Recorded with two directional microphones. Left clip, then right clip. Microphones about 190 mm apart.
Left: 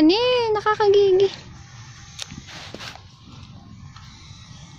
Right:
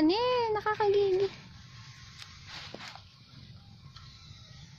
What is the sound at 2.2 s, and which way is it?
Walk, 30° left (ahead or behind).